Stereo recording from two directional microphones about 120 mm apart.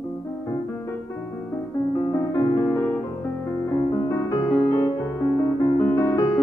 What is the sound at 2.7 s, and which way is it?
Music, 20° left (ahead or behind).